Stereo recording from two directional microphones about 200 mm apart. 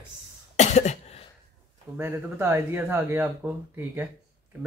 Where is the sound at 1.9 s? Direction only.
10° right (ahead or behind).